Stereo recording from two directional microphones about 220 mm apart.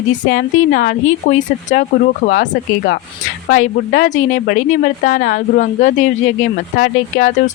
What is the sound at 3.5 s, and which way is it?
A woman's voice, 35° left (ahead or behind).